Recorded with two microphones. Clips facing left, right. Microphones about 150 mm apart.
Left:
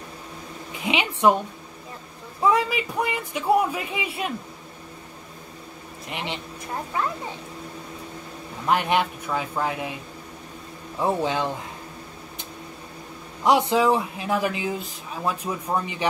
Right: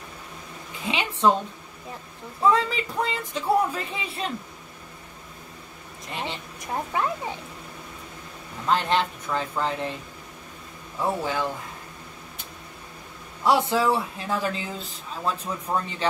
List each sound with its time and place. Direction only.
0.7 s a woman's voice: 15° left (ahead or behind)
2.4 s speech: 15° left (ahead or behind)
6.0 s speech: 20° left (ahead or behind)
8.6 s speech: 15° left (ahead or behind)
11.0 s speech: 20° left (ahead or behind)
13.4 s speech: 20° left (ahead or behind)